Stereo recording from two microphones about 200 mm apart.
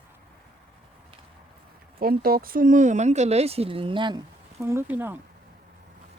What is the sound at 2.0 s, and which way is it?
Speech, 45° right (ahead or behind).